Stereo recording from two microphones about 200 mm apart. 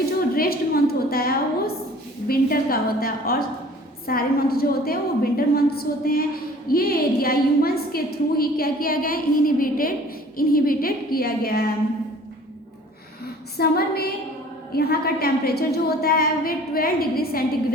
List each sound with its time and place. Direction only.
0.0 s a woman's voice: 50° left (ahead or behind)
13.6 s a woman's voice: 50° left (ahead or behind)